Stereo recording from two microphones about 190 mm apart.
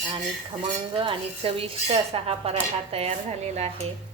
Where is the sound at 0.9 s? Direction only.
30° right (ahead or behind).